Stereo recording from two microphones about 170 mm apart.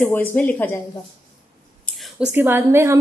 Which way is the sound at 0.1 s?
10° left (ahead or behind).